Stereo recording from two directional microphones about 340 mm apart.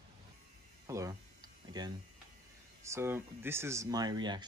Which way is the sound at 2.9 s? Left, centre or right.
Centre.